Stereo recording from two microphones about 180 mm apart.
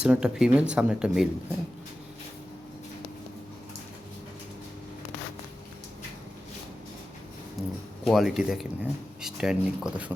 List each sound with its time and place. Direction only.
0.0 s speech: 5° right (ahead or behind)
7.6 s a sound: centre (ahead or behind)
8.0 s speech: centre (ahead or behind)